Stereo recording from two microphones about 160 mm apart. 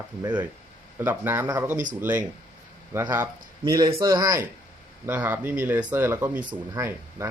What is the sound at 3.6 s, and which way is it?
Speech, 20° right (ahead or behind).